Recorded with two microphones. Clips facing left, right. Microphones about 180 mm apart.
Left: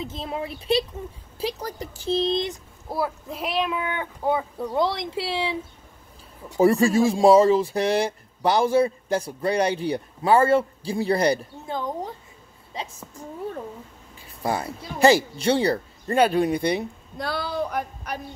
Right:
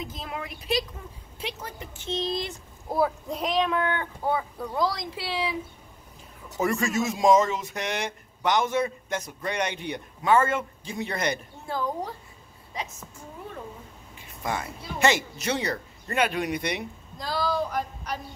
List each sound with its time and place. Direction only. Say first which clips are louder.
0.0 s speech: left 5 dB; 30° left (ahead or behind)
2.9 s speech: right 2 dB; 5° left (ahead or behind); by 5.6 s 25° left (ahead or behind)
6.6 s speech: left 8 dB; 30° left (ahead or behind)
11.6 s speech: left 1 dB; 20° left (ahead or behind)
12.7 s a woman's voice: left 1 dB; 30° left (ahead or behind)
14.1 s speech: left 5 dB; 35° left (ahead or behind)
17.2 s speech: even; 60° left (ahead or behind)